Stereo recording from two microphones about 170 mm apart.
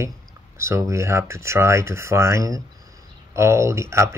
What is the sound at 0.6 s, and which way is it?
Speech, 15° right (ahead or behind).